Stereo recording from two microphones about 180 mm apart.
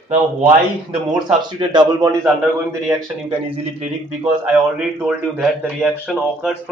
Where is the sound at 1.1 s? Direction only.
25° right (ahead or behind).